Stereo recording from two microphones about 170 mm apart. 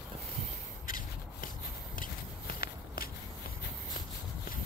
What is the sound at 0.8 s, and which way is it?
Rub, 55° left (ahead or behind).